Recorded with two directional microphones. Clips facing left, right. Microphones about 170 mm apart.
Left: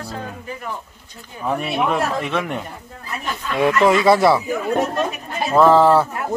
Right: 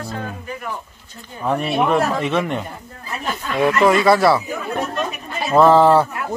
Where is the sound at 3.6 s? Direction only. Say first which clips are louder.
Even; 20° left (ahead or behind).